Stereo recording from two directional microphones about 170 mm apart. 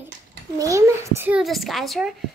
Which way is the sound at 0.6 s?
20° right (ahead or behind).